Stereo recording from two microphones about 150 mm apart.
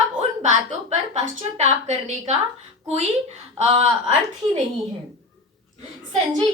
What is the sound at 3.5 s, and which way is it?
Speech, 45° right (ahead or behind).